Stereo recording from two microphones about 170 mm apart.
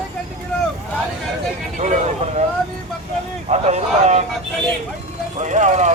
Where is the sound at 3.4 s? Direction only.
40° right (ahead or behind).